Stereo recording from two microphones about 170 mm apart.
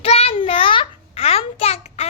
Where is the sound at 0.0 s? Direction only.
35° left (ahead or behind).